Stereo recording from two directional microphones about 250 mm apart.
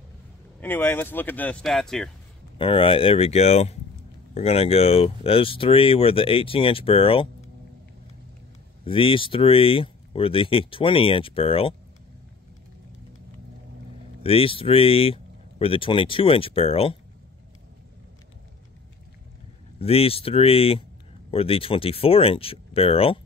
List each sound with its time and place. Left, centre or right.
0.6 s speech: centre
2.6 s speech: left
8.8 s speech: left
14.2 s speech: left
19.8 s speech: left